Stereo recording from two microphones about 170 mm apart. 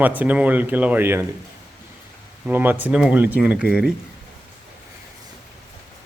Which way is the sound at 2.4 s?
10° right (ahead or behind).